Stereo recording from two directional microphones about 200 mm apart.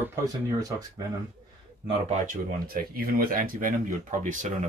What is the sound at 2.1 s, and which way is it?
Speech, 40° right (ahead or behind).